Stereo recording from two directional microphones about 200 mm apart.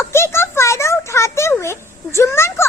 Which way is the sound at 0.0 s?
15° left (ahead or behind).